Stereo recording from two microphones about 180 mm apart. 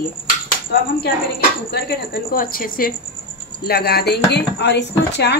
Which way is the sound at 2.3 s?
50° left (ahead or behind).